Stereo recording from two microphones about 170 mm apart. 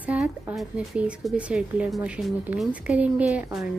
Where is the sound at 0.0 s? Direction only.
10° right (ahead or behind).